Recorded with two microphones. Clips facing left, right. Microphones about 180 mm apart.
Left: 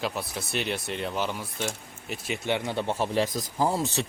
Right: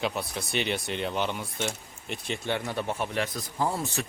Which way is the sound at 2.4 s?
20° left (ahead or behind).